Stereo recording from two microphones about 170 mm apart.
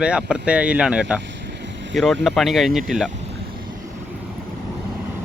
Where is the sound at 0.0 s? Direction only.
5° right (ahead or behind).